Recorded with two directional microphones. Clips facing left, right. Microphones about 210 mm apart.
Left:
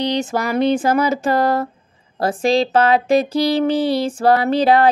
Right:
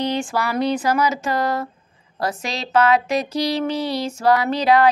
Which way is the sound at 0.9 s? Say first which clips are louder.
Left 4 dB; 55° left (ahead or behind).